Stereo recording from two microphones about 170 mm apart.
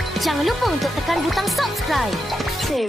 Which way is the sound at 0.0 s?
Centre (ahead or behind).